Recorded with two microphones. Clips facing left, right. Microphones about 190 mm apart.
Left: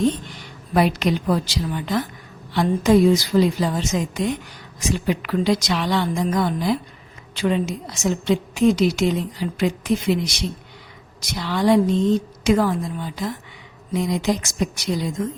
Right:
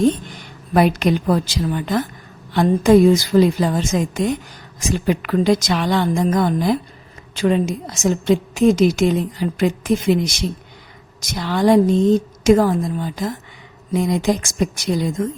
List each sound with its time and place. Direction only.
0.7 s a woman's voice: 50° right (ahead or behind)